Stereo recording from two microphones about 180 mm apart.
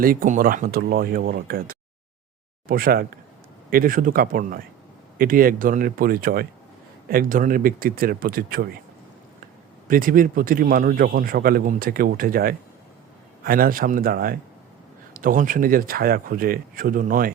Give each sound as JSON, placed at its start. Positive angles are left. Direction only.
{"t": 0.0, "sound": "a man's voice", "side_deg": -50}
{"t": 9.9, "sound": "a man's voice", "side_deg": -50}